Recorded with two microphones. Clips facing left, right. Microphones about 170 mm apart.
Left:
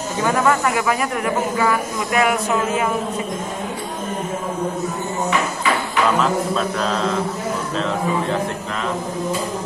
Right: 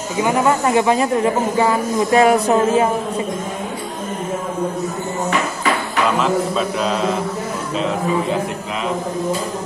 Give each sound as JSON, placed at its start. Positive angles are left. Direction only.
{"t": 0.2, "sound": "speech", "side_deg": -20}
{"t": 6.2, "sound": "a man's voice", "side_deg": -5}